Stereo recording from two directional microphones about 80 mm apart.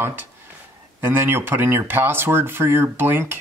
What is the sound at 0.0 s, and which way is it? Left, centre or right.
Speech, right.